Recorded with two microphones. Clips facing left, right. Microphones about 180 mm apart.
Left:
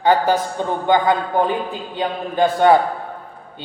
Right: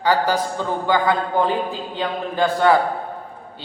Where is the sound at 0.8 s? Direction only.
20° left (ahead or behind).